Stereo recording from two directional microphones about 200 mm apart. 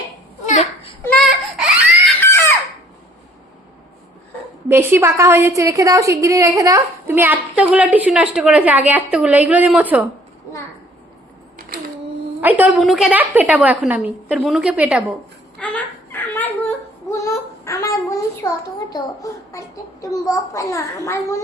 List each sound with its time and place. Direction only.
0.4 s baby cry: 35° left (ahead or behind)
1.0 s baby cry: 5° left (ahead or behind)
4.7 s a woman's voice: 10° right (ahead or behind)
12.4 s a woman's voice: 10° right (ahead or behind)
15.5 s fowl: 5° left (ahead or behind)
17.1 s a sound: 15° left (ahead or behind)
18.4 s a child's voice: 20° left (ahead or behind)